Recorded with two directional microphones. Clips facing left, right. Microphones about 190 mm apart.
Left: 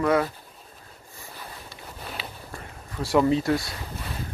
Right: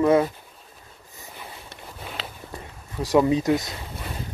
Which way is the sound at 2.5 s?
15° right (ahead or behind).